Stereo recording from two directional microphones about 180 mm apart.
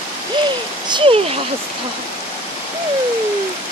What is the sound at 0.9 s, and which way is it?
Speech, 30° right (ahead or behind).